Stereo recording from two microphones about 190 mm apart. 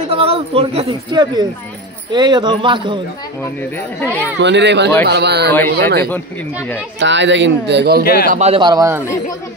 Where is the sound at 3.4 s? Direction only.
10° left (ahead or behind).